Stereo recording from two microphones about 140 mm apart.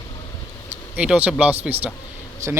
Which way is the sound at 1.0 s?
10° right (ahead or behind).